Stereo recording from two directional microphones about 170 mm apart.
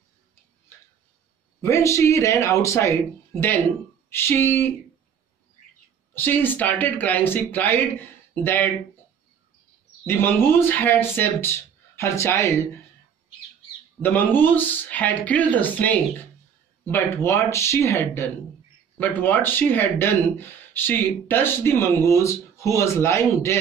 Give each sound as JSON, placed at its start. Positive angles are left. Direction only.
{"t": 1.6, "sound": "speech", "side_deg": 15}
{"t": 6.1, "sound": "speech", "side_deg": 10}
{"t": 10.0, "sound": "speech", "side_deg": 10}
{"t": 14.0, "sound": "speech", "side_deg": 10}